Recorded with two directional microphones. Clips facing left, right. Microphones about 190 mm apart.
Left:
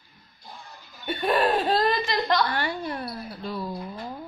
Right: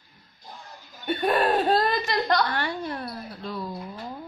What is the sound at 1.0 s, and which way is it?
Speech, 45° right (ahead or behind).